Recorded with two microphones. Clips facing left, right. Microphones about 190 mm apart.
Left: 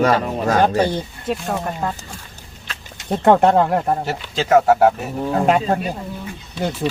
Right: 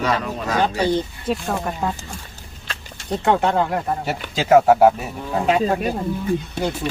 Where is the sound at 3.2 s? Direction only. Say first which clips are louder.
Left 5 dB; 45° left (ahead or behind).